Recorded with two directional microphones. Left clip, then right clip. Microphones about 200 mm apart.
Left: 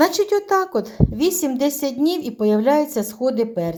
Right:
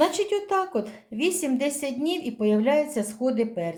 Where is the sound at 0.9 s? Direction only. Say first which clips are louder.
Left 6 dB; 30° left (ahead or behind).